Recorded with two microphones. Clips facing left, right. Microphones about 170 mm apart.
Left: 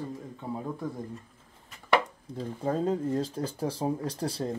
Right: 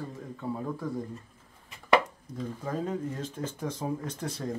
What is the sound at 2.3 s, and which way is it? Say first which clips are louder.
Speech: left 4 dB; 30° left (ahead or behind).